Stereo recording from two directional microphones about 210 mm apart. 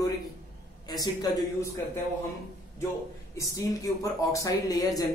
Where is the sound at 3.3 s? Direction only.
15° left (ahead or behind).